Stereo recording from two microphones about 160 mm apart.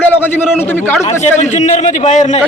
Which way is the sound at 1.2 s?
45° left (ahead or behind).